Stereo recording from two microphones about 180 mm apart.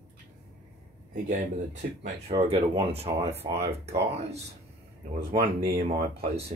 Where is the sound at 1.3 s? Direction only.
40° right (ahead or behind).